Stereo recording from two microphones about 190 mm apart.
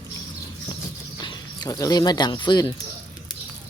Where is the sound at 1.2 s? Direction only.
20° left (ahead or behind).